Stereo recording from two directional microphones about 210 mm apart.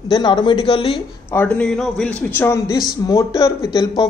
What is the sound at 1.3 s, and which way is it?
A man's voice, 10° left (ahead or behind).